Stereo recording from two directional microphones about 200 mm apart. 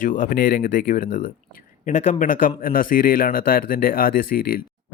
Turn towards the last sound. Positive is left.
turn(degrees=45)  # may be behind; listen again after turning